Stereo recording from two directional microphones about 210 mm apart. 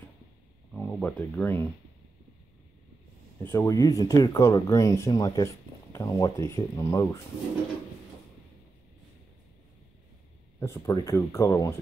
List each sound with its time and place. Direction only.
0.7 s speech: 5° left (ahead or behind)
3.4 s speech: 15° left (ahead or behind)
10.6 s speech: 15° left (ahead or behind)